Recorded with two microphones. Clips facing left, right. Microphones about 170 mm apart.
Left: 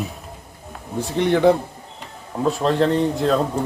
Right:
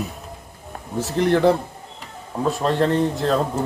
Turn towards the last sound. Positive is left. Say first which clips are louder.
# left 2 dB
turn(degrees=0)  # may be behind; listen again after turning